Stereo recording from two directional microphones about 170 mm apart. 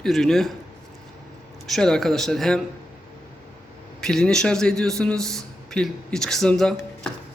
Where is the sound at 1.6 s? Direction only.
Centre (ahead or behind).